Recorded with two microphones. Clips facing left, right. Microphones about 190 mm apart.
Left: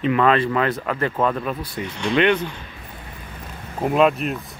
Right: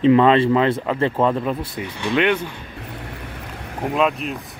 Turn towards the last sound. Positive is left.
turn(degrees=0)  # may be behind; listen again after turning